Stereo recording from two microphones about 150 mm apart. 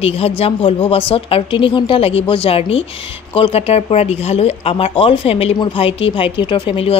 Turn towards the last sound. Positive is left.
turn(degrees=35)  # may be behind; listen again after turning